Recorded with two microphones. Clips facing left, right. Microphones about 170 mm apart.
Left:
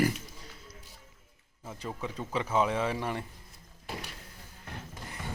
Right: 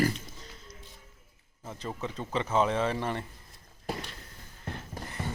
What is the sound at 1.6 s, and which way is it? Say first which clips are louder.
A man's voice: right 1 dB; centre (ahead or behind).